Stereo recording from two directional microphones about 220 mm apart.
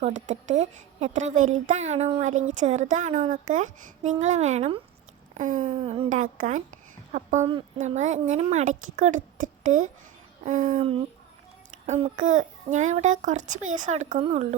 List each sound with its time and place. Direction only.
0.3 s a child's voice: 30° right (ahead or behind)
5.3 s a sound: 35° right (ahead or behind)
5.7 s a child's voice: 25° right (ahead or behind)
10.8 s a child's voice: 25° right (ahead or behind)